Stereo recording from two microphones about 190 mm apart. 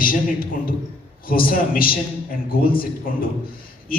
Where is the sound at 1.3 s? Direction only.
50° left (ahead or behind).